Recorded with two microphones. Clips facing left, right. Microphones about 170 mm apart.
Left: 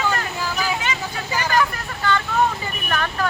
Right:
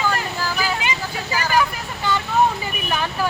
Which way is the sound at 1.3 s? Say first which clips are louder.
Right 1 dB; 10° right (ahead or behind).